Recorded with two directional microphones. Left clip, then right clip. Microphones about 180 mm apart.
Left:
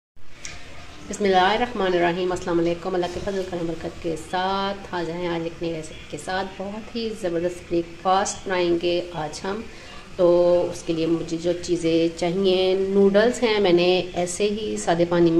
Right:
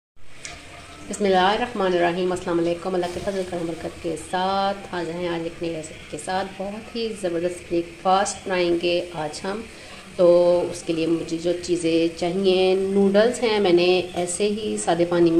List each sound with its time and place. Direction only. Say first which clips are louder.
1.1 s speech: even; centre (ahead or behind)
4.3 s speech: right 2 dB; centre (ahead or behind)